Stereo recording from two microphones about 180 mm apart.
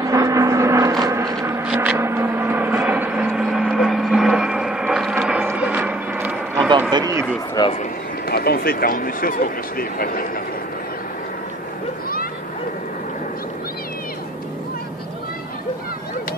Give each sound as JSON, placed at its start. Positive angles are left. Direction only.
{"t": 0.0, "sound": "gong", "side_deg": -20}
{"t": 6.9, "sound": "a sound", "side_deg": -20}
{"t": 7.6, "sound": "speech", "side_deg": 25}
{"t": 8.3, "sound": "speech", "side_deg": 60}